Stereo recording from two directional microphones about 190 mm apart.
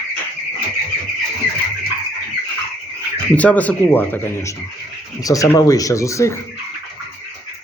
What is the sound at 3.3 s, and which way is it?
Speech, 10° left (ahead or behind).